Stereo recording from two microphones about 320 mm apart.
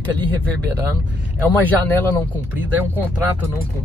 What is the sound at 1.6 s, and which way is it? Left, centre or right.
Speech, centre.